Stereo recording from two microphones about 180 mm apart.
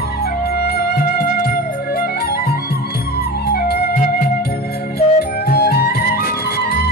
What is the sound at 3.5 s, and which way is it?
Music, 60° left (ahead or behind).